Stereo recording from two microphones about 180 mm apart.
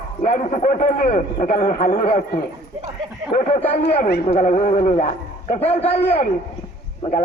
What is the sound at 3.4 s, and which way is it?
A man's voice, 40° left (ahead or behind).